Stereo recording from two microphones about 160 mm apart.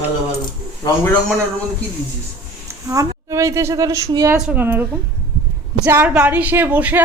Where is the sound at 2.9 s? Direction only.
20° right (ahead or behind).